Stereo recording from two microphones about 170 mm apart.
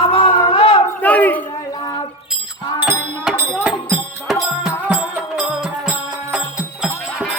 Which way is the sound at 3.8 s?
15° right (ahead or behind).